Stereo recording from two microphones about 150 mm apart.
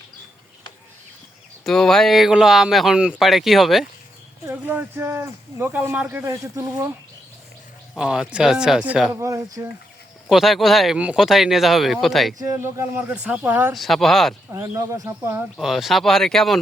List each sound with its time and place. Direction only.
1.6 s speech: 5° left (ahead or behind)
4.4 s speech: 10° right (ahead or behind)
7.9 s speech: 5° right (ahead or behind)
9.1 s speech: 20° right (ahead or behind)
10.2 s speech: centre (ahead or behind)
12.4 s speech: 20° right (ahead or behind)
13.7 s speech: centre (ahead or behind)
14.5 s speech: 20° right (ahead or behind)
15.5 s speech: centre (ahead or behind)